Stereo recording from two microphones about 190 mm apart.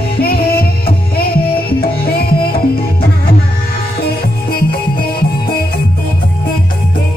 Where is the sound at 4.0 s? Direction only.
55° left (ahead or behind).